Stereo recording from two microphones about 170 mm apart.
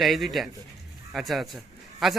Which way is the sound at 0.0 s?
Centre (ahead or behind).